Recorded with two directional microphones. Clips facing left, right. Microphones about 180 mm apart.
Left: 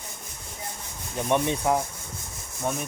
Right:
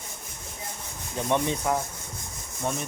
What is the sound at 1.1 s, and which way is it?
Rub, 15° left (ahead or behind).